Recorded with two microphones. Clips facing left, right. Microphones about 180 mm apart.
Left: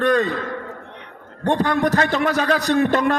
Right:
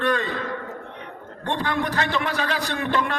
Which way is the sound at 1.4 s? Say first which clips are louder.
Left 7 dB; 45° left (ahead or behind).